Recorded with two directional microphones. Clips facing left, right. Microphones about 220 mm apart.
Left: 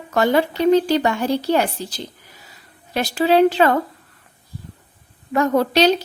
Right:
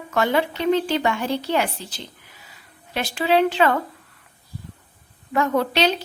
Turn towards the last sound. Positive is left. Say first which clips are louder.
# left 5 dB
turn(degrees=40)  # may be behind; listen again after turning